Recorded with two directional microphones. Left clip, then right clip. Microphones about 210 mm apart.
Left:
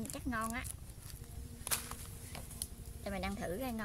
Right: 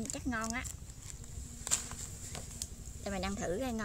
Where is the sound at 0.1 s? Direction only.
10° right (ahead or behind).